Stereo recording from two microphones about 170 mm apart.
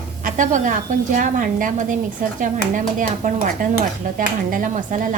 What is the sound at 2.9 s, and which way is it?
A woman's voice, 50° right (ahead or behind).